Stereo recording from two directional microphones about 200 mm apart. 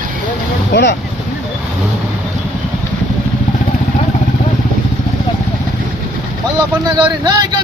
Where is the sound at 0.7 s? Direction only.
60° left (ahead or behind).